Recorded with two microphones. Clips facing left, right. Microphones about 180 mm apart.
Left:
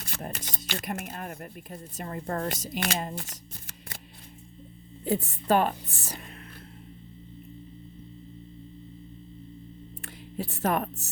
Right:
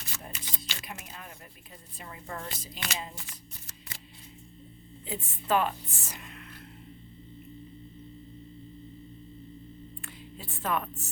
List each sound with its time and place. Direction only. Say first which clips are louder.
0.0 s speech: left 6 dB; 55° left (ahead or behind)
1.7 s a woman's voice: left 9 dB; 45° left (ahead or behind)
5.0 s speech: left 7 dB; 40° left (ahead or behind)
10.3 s speech: left 5 dB; 40° left (ahead or behind)